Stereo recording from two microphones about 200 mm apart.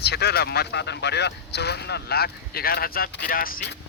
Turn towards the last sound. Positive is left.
turn(degrees=45)  # may be behind; listen again after turning